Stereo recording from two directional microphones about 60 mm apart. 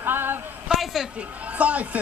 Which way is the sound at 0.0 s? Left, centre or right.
Right.